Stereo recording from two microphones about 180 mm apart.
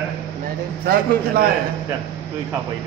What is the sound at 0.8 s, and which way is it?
Speech, 55° right (ahead or behind).